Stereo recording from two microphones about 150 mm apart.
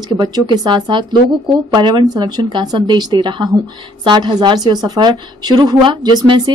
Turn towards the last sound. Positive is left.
turn(degrees=-30)  # may be behind; listen again after turning